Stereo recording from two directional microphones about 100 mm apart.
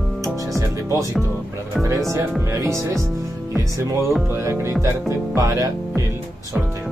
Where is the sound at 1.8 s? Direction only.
30° right (ahead or behind).